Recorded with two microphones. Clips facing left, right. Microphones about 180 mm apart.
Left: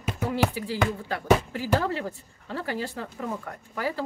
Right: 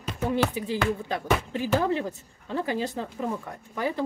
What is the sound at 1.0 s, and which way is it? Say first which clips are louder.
Speech: left 4 dB; 20° right (ahead or behind).